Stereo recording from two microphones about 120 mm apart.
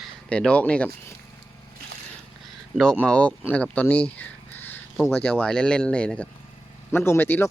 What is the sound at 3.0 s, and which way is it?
Speech, 10° left (ahead or behind).